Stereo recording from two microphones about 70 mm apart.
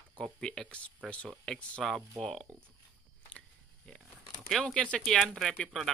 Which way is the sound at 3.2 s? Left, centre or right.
Centre.